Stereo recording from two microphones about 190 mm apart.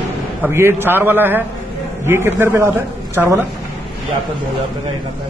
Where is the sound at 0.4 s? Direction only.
10° right (ahead or behind).